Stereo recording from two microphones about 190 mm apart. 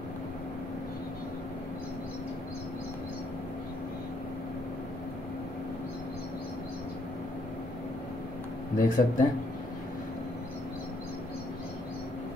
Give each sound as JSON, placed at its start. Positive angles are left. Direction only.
{"t": 8.7, "sound": "speech", "side_deg": 45}